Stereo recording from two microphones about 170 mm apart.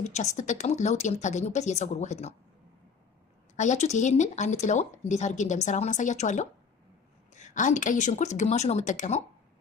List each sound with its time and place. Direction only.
0.0 s speech: 45° left (ahead or behind)
3.5 s speech: 45° left (ahead or behind)